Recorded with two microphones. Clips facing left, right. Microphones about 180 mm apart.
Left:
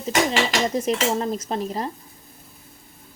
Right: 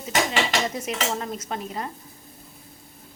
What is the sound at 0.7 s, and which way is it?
Speech, 35° left (ahead or behind).